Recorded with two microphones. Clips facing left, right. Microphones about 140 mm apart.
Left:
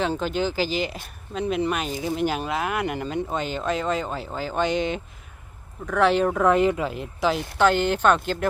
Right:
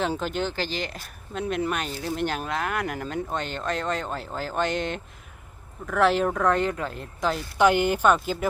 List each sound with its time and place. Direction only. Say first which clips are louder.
0.0 s speech: left 2 dB; centre (ahead or behind)
7.6 s speech: even; 10° right (ahead or behind)